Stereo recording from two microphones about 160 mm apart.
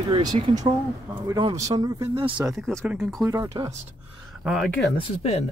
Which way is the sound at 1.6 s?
20° right (ahead or behind).